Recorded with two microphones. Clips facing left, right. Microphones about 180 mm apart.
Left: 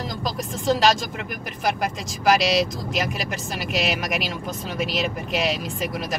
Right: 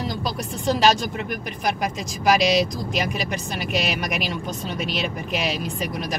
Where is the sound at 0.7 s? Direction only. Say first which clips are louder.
Right 1 dB; centre (ahead or behind).